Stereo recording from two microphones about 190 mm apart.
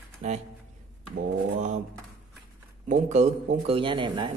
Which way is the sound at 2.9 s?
35° right (ahead or behind).